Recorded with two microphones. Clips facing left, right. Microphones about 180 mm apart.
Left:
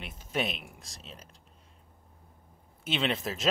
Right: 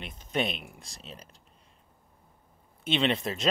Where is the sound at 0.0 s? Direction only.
5° left (ahead or behind).